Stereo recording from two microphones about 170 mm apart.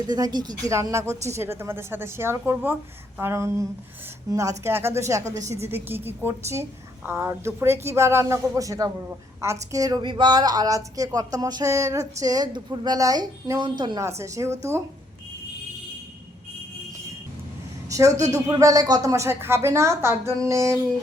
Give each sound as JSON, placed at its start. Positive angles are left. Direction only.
{"t": 0.1, "sound": "a woman's voice", "side_deg": -25}
{"t": 17.9, "sound": "a sound", "side_deg": -20}
{"t": 18.3, "sound": "speech", "side_deg": -20}